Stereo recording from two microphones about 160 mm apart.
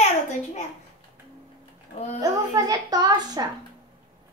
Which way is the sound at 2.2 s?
20° right (ahead or behind).